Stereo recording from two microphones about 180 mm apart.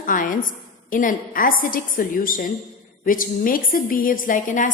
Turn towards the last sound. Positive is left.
turn(degrees=45)  # may be behind; listen again after turning